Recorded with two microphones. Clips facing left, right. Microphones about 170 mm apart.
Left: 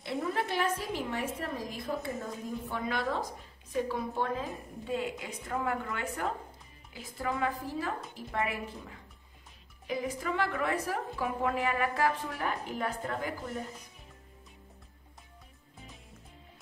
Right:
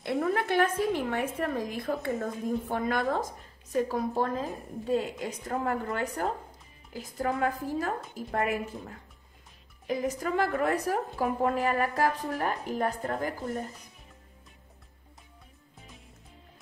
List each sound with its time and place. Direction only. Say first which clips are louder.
0.0 s a woman's voice: right 5 dB; 60° right (ahead or behind); by 13.3 s 45° right (ahead or behind)